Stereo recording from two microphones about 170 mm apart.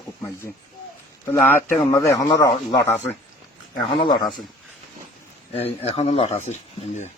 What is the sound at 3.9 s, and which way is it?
Speech, 25° left (ahead or behind).